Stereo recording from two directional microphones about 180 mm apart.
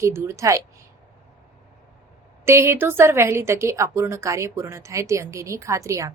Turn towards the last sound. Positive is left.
turn(degrees=-15)  # may be behind; listen again after turning